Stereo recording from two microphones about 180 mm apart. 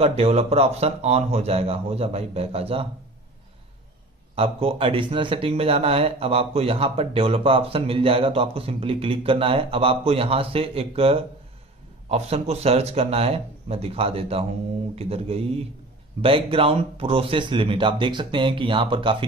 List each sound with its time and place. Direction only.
0.0 s speech: 35° right (ahead or behind)
4.4 s speech: 30° right (ahead or behind)